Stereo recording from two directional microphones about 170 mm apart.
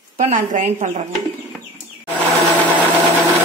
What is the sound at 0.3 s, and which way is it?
Speech, 45° right (ahead or behind).